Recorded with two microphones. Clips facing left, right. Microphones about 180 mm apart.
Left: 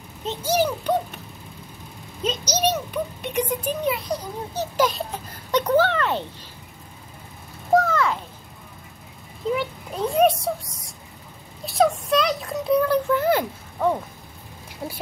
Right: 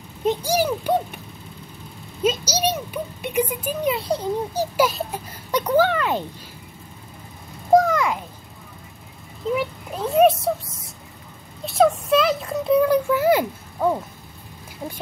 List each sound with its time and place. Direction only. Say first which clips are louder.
0.2 s a child's voice: right 2 dB; 10° right (ahead or behind)
2.2 s a child's voice: right 2 dB; 10° right (ahead or behind)
3.9 s a child's voice: right 3 dB; 25° right (ahead or behind)
4.6 s a child's voice: left 1 dB; 5° right (ahead or behind)
7.7 s a sound: right 3 dB; 15° right (ahead or behind)
9.5 s speech: right 1 dB; centre (ahead or behind)
11.6 s a sound: right 2 dB; centre (ahead or behind)
12.8 s a child's voice: right 2 dB; 10° right (ahead or behind)